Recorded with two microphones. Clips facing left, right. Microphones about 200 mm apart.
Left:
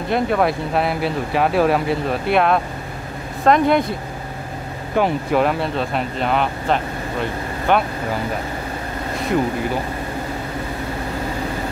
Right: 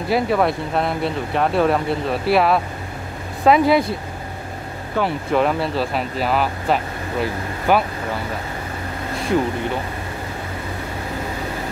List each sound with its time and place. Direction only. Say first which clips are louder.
0.1 s speech: even; centre (ahead or behind)
5.0 s speech: left 3 dB; 15° left (ahead or behind)
5.3 s speech: right 3 dB; centre (ahead or behind)
9.3 s speech: even; centre (ahead or behind)